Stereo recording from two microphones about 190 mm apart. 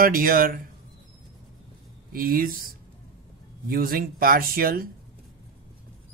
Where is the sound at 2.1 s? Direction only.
50° right (ahead or behind).